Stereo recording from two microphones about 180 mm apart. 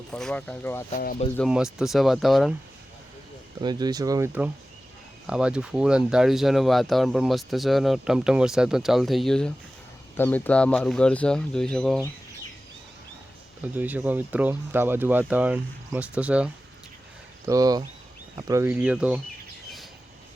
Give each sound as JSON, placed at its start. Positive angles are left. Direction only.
{"t": 0.1, "sound": "speech", "side_deg": 5}
{"t": 0.9, "sound": "speech", "side_deg": 50}
{"t": 1.5, "sound": "speech", "side_deg": -5}
{"t": 3.6, "sound": "speech", "side_deg": -25}
{"t": 5.2, "sound": "speech", "side_deg": -5}
{"t": 13.7, "sound": "speech", "side_deg": -10}
{"t": 17.4, "sound": "speech", "side_deg": -20}